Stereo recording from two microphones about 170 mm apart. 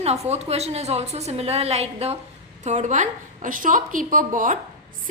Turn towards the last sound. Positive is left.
turn(degrees=-50)  # may be behind; listen again after turning